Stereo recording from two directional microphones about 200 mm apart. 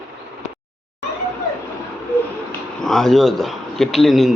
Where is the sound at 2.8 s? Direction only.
Centre (ahead or behind).